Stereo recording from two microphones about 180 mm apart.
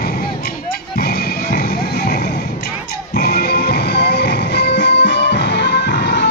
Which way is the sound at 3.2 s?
65° left (ahead or behind).